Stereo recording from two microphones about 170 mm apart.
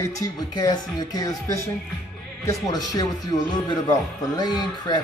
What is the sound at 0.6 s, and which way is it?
Speech, 25° left (ahead or behind).